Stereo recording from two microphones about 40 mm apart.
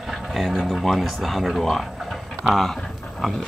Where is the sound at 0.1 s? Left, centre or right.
Centre.